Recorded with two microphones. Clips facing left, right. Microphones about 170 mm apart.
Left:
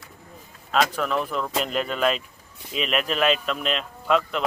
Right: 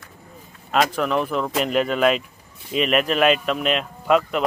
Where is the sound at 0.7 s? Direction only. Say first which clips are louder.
Right 3 dB; 5° right (ahead or behind).